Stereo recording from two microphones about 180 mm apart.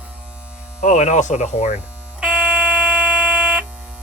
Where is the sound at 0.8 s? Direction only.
40° left (ahead or behind).